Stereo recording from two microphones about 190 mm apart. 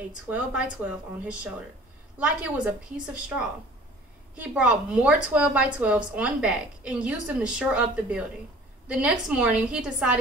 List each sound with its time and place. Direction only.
0.3 s a woman's voice: 5° right (ahead or behind)